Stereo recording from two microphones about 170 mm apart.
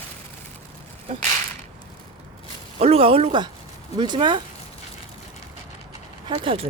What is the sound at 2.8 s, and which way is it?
Speech, 35° right (ahead or behind).